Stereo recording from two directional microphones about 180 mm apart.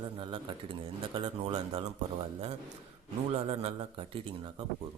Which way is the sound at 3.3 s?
35° right (ahead or behind).